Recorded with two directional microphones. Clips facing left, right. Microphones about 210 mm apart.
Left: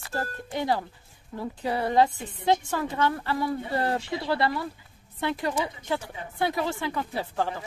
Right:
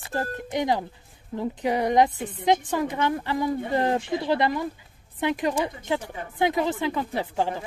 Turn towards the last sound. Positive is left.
turn(degrees=-20)  # may be behind; listen again after turning